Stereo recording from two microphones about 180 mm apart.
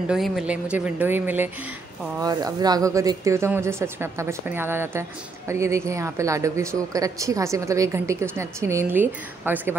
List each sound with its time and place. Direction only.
0.1 s a woman's voice: 5° right (ahead or behind)
2.1 s a woman's voice: 20° right (ahead or behind)